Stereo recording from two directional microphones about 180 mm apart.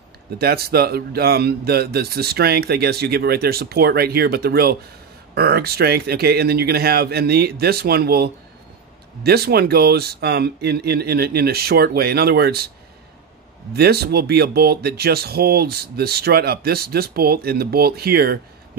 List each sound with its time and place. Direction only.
0.4 s speech: 60° right (ahead or behind)
13.7 s speech: 65° right (ahead or behind)